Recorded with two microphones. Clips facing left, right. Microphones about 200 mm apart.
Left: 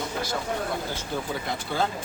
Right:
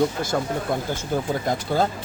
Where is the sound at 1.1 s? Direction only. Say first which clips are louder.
Right 7 dB; 45° right (ahead or behind).